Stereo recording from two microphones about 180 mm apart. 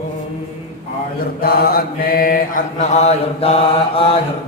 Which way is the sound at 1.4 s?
60° left (ahead or behind).